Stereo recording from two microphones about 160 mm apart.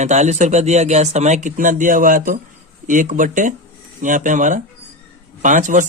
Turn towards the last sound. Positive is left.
turn(degrees=-50)  # may be behind; listen again after turning